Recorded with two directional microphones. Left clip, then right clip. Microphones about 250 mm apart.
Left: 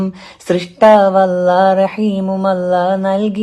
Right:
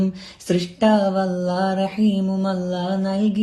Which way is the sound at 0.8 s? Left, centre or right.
Left.